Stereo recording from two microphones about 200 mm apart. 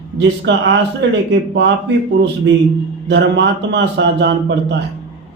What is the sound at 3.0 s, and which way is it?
A man's voice, 60° right (ahead or behind).